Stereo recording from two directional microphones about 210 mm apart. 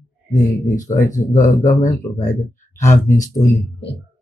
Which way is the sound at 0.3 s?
35° left (ahead or behind).